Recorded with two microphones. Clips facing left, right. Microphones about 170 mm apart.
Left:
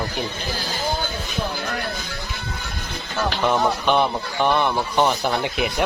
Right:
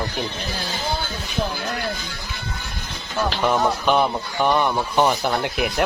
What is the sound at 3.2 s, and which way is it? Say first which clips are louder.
Speech: even; 5° right (ahead or behind).